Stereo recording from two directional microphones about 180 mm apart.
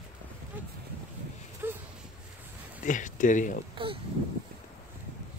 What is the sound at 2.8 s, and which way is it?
Speech, 45° left (ahead or behind).